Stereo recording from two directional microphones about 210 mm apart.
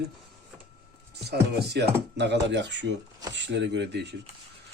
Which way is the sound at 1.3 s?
50° right (ahead or behind).